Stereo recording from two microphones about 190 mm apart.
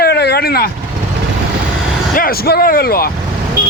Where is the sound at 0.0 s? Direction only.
60° left (ahead or behind).